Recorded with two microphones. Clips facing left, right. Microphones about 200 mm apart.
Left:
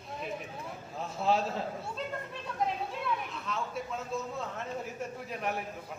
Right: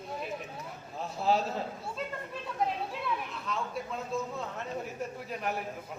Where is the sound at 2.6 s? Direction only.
5° right (ahead or behind).